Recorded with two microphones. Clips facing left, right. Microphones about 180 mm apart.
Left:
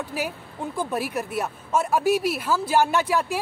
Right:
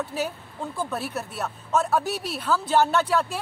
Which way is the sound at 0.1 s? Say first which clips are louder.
Even; 10° left (ahead or behind).